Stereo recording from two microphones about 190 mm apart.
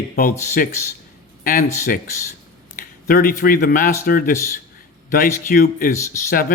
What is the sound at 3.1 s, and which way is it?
Speech, 50° left (ahead or behind).